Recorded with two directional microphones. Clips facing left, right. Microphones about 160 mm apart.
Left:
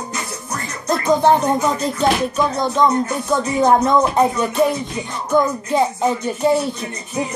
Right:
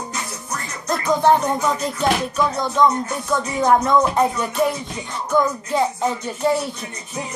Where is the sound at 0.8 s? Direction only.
25° left (ahead or behind).